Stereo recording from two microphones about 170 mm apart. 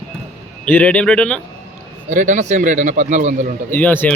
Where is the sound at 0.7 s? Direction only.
10° left (ahead or behind).